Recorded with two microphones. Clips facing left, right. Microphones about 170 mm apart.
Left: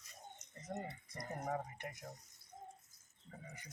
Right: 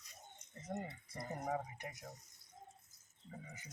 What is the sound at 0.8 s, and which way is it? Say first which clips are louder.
Speech: even; 5° right (ahead or behind).